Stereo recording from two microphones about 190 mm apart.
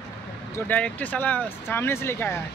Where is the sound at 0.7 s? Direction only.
10° left (ahead or behind).